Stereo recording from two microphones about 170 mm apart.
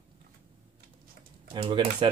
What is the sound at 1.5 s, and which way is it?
Speech, 30° right (ahead or behind).